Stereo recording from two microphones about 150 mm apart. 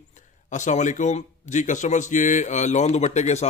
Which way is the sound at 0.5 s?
55° left (ahead or behind).